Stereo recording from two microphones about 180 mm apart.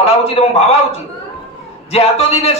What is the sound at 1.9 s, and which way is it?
Speech, 35° left (ahead or behind).